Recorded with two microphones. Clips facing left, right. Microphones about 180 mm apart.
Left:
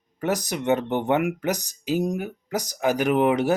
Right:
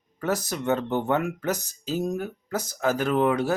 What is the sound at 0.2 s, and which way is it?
Speech, 15° left (ahead or behind).